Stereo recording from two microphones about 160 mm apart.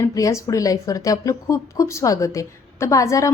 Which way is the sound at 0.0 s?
20° left (ahead or behind).